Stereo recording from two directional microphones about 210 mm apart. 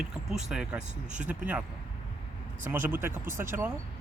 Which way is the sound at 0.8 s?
35° right (ahead or behind).